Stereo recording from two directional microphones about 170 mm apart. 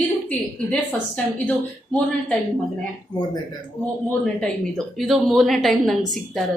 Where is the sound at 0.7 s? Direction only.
5° left (ahead or behind).